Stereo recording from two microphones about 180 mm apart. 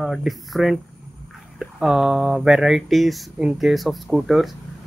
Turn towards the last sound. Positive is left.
turn(degrees=0)  # may be behind; listen again after turning